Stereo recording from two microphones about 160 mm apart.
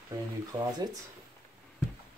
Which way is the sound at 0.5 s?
25° right (ahead or behind).